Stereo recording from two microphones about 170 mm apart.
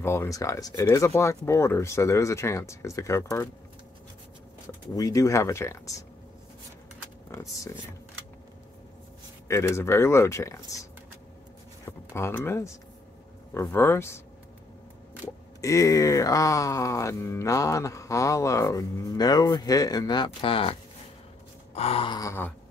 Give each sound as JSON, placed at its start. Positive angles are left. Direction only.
{"t": 0.0, "sound": "speech", "side_deg": 15}
{"t": 4.9, "sound": "speech", "side_deg": 20}
{"t": 7.2, "sound": "speech", "side_deg": 15}
{"t": 9.5, "sound": "speech", "side_deg": 15}
{"t": 15.2, "sound": "speech", "side_deg": 20}
{"t": 21.7, "sound": "gasp", "side_deg": 35}